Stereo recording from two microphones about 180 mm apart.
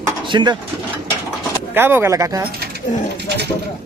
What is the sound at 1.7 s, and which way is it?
Speech, 10° right (ahead or behind).